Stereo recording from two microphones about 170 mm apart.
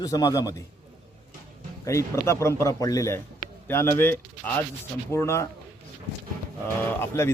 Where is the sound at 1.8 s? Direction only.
15° left (ahead or behind).